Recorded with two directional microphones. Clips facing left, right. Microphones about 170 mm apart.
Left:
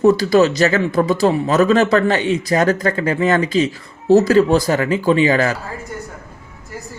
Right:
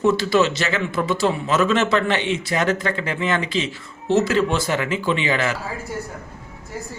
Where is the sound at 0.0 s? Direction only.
40° left (ahead or behind).